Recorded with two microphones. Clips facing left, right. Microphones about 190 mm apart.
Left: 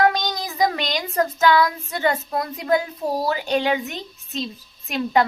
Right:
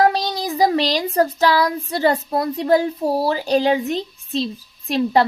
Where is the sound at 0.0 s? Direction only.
30° right (ahead or behind).